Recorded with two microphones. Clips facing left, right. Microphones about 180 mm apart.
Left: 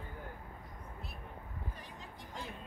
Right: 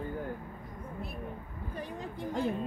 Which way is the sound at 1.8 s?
60° right (ahead or behind).